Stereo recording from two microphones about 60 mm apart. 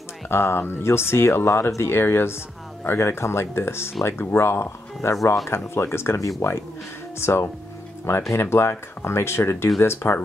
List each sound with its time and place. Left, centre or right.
0.3 s speech: left